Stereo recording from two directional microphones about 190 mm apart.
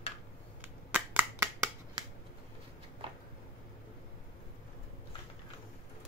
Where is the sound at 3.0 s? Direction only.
30° right (ahead or behind).